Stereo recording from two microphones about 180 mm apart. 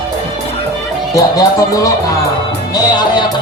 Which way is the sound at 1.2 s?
20° left (ahead or behind).